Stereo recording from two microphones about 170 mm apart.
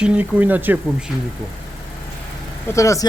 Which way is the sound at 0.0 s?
10° right (ahead or behind).